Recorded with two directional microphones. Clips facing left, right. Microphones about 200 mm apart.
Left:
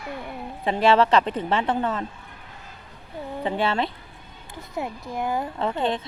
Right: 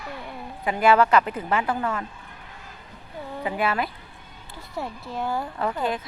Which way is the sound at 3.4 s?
30° left (ahead or behind).